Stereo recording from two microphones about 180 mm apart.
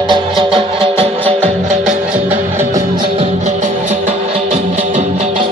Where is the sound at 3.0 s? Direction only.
35° right (ahead or behind).